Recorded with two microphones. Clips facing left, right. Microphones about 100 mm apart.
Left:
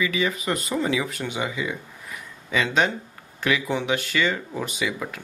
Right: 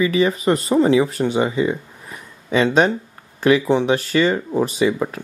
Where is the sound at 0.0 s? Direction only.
35° right (ahead or behind).